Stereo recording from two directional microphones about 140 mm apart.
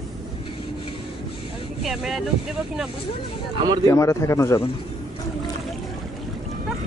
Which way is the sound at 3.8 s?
20° left (ahead or behind).